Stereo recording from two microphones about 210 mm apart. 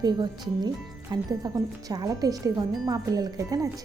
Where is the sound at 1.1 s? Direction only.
20° right (ahead or behind).